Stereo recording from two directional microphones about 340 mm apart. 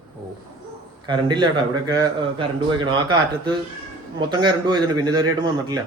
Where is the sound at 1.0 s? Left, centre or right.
Centre.